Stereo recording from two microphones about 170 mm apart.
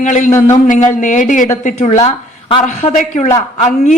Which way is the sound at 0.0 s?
45° left (ahead or behind).